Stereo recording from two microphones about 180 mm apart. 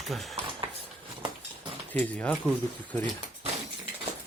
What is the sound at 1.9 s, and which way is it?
Speech, 10° left (ahead or behind).